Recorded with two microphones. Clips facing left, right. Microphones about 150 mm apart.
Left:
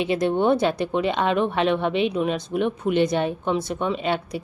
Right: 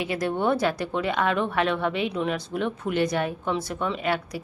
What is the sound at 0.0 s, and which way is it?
Speech, 25° left (ahead or behind).